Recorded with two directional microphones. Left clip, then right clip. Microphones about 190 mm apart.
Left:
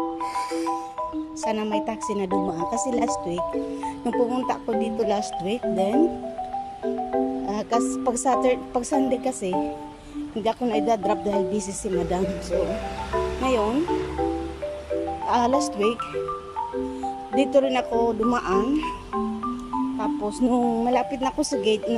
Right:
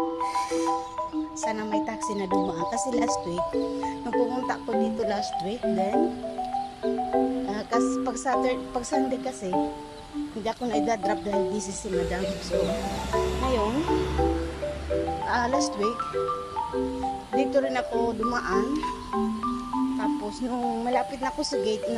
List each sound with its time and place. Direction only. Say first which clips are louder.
0.2 s music: even; 5° left (ahead or behind)
1.4 s speech: left 3 dB; 10° left (ahead or behind)
6.8 s music: even; centre (ahead or behind)
7.4 s music: left 3 dB; 10° left (ahead or behind)
7.9 s speech: left 4 dB; 20° left (ahead or behind)
13.4 s music: left 7 dB; 5° left (ahead or behind)
15.2 s speech: left 5 dB; 10° left (ahead or behind)
17.4 s speech: left 5 dB; 15° left (ahead or behind)
20.0 s speech: left 4 dB; 15° left (ahead or behind)